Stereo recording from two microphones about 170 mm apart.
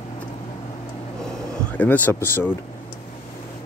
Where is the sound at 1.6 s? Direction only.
10° left (ahead or behind).